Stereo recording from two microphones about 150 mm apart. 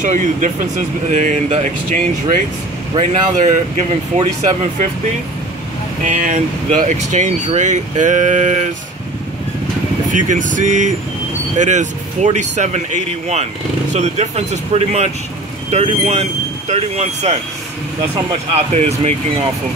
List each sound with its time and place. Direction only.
0.0 s speech: 55° right (ahead or behind)
6.0 s speech: 60° right (ahead or behind)
10.1 s speech: 55° right (ahead or behind)
18.5 s speech: 45° right (ahead or behind)